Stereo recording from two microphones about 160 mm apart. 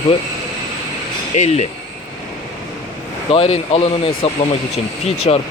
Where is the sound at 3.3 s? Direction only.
40° left (ahead or behind).